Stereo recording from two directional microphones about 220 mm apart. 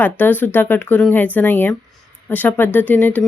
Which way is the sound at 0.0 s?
10° left (ahead or behind).